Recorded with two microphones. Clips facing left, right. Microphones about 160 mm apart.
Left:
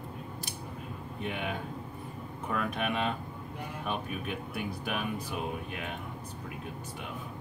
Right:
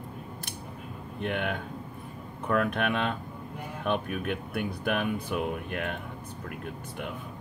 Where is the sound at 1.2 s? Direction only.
60° right (ahead or behind).